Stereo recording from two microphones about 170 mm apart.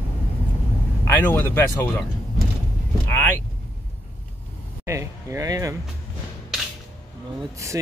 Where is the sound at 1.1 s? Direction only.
10° left (ahead or behind).